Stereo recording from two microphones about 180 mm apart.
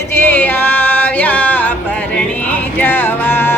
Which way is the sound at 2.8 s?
10° left (ahead or behind).